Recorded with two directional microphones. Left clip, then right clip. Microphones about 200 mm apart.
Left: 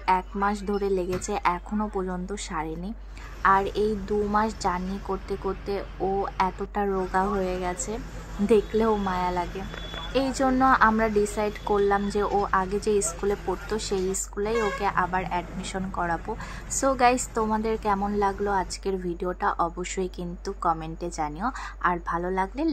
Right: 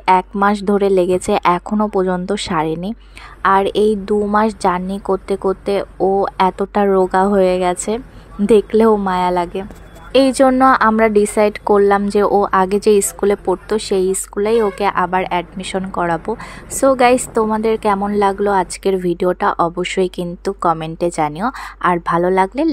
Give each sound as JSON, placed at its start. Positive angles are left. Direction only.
{"t": 0.0, "sound": "a woman's voice", "side_deg": -40}